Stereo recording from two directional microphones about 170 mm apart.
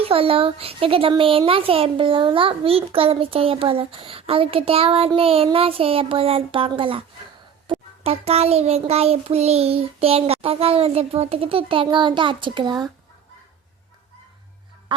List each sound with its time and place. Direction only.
0.0 s a woman's voice: 35° right (ahead or behind)